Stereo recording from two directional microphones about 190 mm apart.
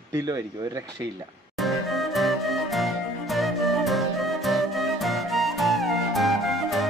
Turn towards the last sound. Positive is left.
turn(degrees=0)  # may be behind; listen again after turning